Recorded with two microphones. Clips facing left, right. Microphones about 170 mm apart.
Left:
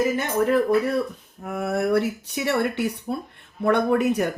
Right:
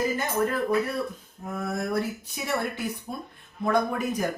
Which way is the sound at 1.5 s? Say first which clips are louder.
Left 6 dB; 70° left (ahead or behind).